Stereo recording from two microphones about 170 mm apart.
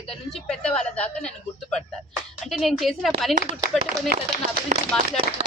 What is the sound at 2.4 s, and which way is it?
Speech, centre (ahead or behind).